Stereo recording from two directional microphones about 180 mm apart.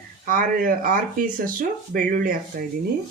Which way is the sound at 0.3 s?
50° right (ahead or behind).